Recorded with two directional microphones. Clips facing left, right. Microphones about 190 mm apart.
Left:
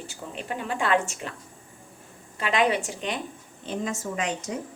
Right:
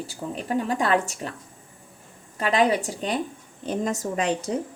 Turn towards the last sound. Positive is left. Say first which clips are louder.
# right 4 dB
turn(degrees=-35)  # may be behind; listen again after turning